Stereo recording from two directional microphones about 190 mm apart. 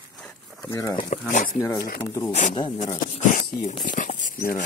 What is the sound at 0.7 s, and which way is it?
Speech, 15° left (ahead or behind).